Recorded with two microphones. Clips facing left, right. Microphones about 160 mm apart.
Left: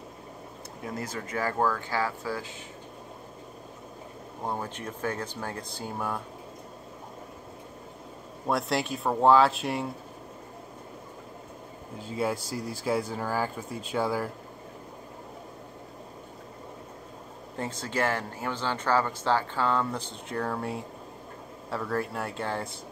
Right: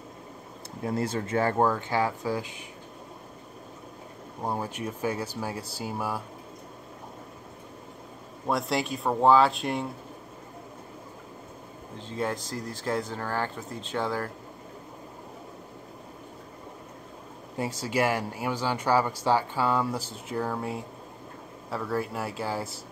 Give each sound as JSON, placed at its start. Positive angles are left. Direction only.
{"t": 0.8, "sound": "speech", "side_deg": -30}
{"t": 4.5, "sound": "speech", "side_deg": -10}
{"t": 8.5, "sound": "speech", "side_deg": 0}
{"t": 12.0, "sound": "speech", "side_deg": 10}
{"t": 17.6, "sound": "speech", "side_deg": -10}